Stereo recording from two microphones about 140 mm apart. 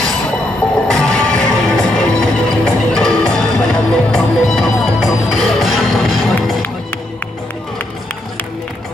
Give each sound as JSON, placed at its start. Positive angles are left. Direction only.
{"t": 0.8, "sound": "music", "side_deg": 5}